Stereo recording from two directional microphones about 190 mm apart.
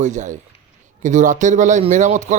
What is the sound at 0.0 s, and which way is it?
Speech, 40° right (ahead or behind).